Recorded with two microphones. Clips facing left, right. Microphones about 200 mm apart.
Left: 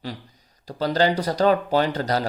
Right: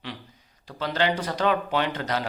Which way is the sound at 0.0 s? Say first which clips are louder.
Left 4 dB; 40° left (ahead or behind).